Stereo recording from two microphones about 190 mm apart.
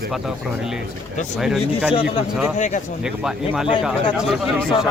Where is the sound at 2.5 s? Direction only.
40° left (ahead or behind).